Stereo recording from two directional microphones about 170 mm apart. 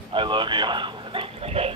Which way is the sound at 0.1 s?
30° right (ahead or behind).